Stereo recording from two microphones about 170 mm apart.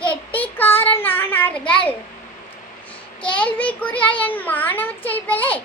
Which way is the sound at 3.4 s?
10° left (ahead or behind).